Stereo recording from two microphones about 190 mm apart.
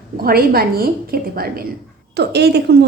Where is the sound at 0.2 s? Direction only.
50° right (ahead or behind).